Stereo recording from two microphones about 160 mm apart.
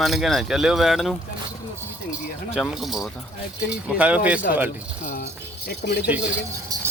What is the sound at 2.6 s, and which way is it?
Speech, centre (ahead or behind).